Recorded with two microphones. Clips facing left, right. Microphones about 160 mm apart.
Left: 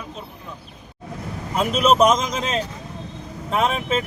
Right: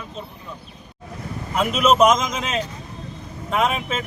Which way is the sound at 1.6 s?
35° left (ahead or behind).